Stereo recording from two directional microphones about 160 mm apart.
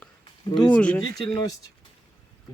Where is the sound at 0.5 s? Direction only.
5° left (ahead or behind).